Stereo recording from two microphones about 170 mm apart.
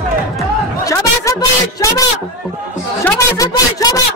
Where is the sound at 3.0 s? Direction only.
20° left (ahead or behind).